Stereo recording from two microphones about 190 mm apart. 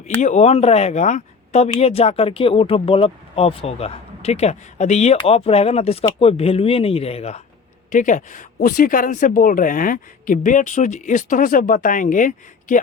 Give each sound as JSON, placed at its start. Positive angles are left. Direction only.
{"t": 0.2, "sound": "speech", "side_deg": 40}